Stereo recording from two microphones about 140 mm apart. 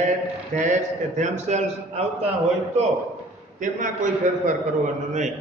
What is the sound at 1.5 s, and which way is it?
Speech, 55° right (ahead or behind).